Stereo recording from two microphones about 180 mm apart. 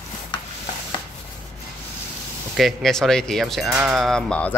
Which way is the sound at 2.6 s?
Centre (ahead or behind).